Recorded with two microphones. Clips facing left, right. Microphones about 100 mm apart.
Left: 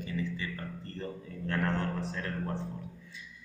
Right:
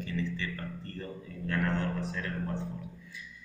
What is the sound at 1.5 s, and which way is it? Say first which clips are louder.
Speech: even; 35° left (ahead or behind).